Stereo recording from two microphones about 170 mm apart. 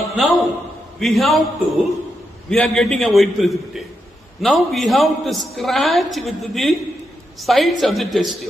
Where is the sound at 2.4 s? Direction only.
5° left (ahead or behind).